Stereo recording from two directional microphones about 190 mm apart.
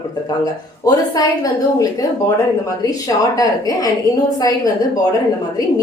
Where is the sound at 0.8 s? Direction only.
20° left (ahead or behind).